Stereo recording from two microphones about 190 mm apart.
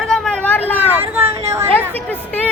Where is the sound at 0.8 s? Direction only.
10° right (ahead or behind).